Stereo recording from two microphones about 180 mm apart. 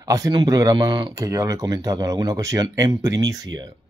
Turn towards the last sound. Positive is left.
turn(degrees=-20)  # may be behind; listen again after turning